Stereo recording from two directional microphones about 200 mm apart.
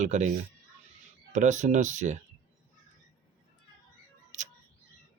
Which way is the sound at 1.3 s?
35° right (ahead or behind).